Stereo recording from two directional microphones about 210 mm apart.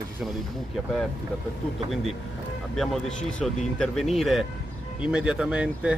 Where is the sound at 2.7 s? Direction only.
Centre (ahead or behind).